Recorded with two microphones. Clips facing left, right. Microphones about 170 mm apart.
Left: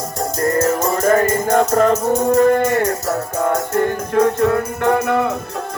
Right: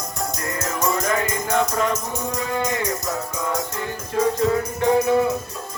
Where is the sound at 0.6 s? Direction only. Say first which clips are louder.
Left 3 dB; 45° left (ahead or behind).